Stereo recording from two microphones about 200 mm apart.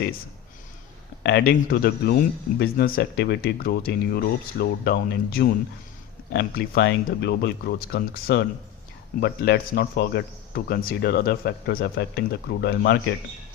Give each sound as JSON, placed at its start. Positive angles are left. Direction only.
{"t": 1.2, "sound": "speech", "side_deg": 55}